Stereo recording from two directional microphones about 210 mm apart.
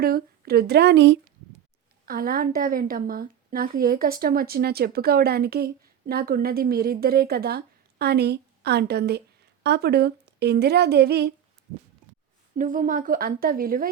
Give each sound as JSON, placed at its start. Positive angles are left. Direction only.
{"t": 0.0, "sound": "a woman's voice", "side_deg": -45}
{"t": 2.0, "sound": "a woman's voice", "side_deg": -45}
{"t": 12.5, "sound": "a woman's voice", "side_deg": -40}